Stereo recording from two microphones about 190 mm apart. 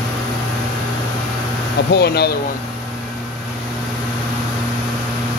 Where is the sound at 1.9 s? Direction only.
55° left (ahead or behind).